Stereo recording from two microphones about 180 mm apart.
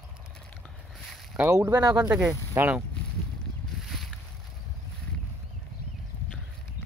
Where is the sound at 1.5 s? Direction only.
15° right (ahead or behind).